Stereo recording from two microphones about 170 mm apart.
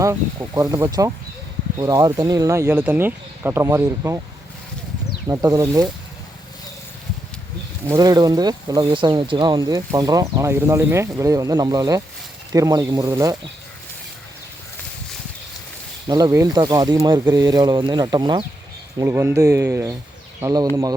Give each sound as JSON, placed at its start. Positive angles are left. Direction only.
{"t": 0.0, "sound": "speech", "side_deg": -15}
{"t": 5.3, "sound": "speech", "side_deg": -20}
{"t": 7.9, "sound": "speech", "side_deg": -20}
{"t": 16.0, "sound": "speech", "side_deg": -25}
{"t": 18.9, "sound": "speech", "side_deg": -15}